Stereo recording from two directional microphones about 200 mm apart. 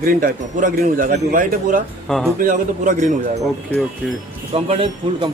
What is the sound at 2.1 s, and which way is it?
Speech, 5° left (ahead or behind).